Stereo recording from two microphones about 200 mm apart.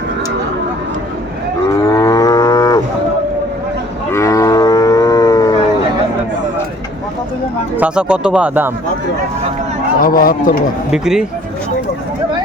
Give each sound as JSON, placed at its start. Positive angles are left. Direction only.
{"t": 1.7, "sound": "moo", "side_deg": 15}
{"t": 4.1, "sound": "livestock", "side_deg": 15}
{"t": 7.8, "sound": "speech", "side_deg": -5}
{"t": 10.0, "sound": "a man's voice", "side_deg": 45}
{"t": 10.9, "sound": "speech", "side_deg": -5}